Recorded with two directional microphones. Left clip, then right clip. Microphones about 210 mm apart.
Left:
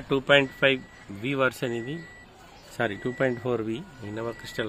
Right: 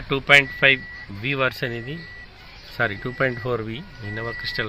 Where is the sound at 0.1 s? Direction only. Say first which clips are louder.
Right 5 dB; 10° left (ahead or behind).